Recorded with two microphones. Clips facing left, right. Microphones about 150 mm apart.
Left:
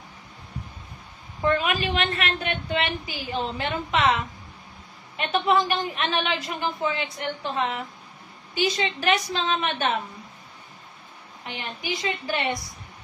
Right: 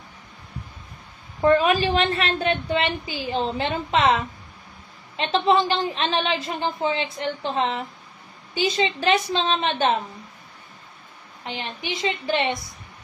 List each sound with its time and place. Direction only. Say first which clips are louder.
1.4 s a woman's voice: right 6 dB; 30° right (ahead or behind)
11.4 s a woman's voice: right 2 dB; 25° right (ahead or behind)